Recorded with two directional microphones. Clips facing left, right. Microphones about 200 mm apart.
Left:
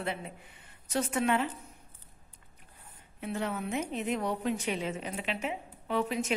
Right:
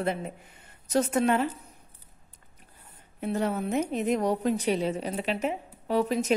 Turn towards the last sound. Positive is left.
turn(degrees=-40)  # may be behind; listen again after turning